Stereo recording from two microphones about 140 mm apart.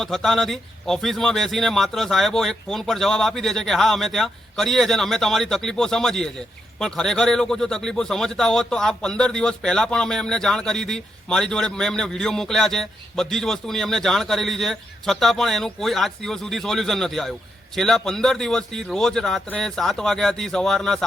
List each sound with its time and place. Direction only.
0.0 s a man's voice: centre (ahead or behind)